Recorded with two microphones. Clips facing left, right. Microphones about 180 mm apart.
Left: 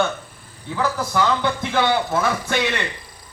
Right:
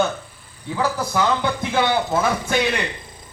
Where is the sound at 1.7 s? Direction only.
20° right (ahead or behind).